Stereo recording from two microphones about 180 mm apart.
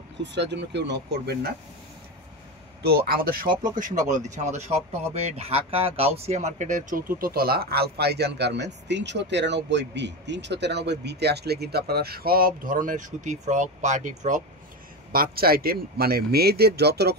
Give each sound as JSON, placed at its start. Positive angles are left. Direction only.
{"t": 0.2, "sound": "speech", "side_deg": -75}
{"t": 2.8, "sound": "speech", "side_deg": -60}
{"t": 15.1, "sound": "speech", "side_deg": -55}